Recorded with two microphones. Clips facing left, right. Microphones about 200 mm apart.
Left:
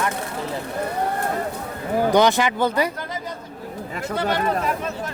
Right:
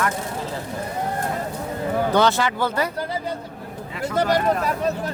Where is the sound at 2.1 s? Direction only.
15° left (ahead or behind).